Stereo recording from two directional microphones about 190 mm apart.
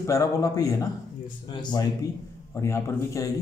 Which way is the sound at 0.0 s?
15° left (ahead or behind).